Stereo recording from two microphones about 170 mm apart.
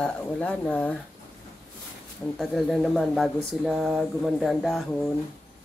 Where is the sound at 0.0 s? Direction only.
5° left (ahead or behind).